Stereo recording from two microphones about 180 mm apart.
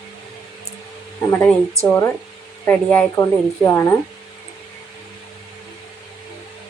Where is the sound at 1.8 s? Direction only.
10° left (ahead or behind).